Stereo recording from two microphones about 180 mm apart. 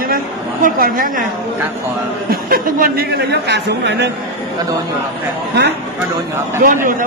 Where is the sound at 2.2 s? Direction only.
55° right (ahead or behind).